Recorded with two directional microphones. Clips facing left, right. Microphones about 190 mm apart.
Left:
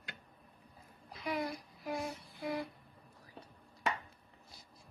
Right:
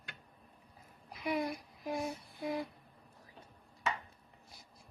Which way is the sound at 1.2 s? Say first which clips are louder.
Right 2 dB; 20° right (ahead or behind).